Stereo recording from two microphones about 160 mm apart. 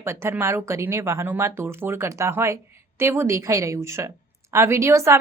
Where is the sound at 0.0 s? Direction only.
15° right (ahead or behind).